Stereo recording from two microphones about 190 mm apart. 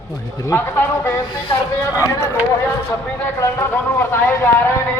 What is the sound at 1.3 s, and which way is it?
Speech, 25° left (ahead or behind).